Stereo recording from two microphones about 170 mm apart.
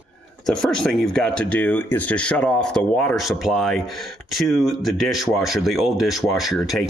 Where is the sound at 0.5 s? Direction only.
5° left (ahead or behind).